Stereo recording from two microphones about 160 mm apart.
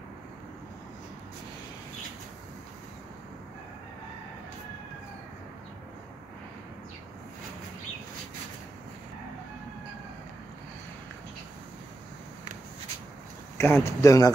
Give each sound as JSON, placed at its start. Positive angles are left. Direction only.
{"t": 13.6, "sound": "speech", "side_deg": 15}